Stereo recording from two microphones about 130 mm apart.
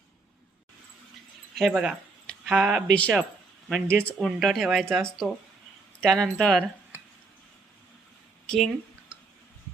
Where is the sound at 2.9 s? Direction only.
10° left (ahead or behind).